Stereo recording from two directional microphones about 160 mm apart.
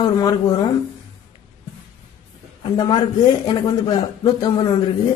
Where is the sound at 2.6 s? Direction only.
25° left (ahead or behind).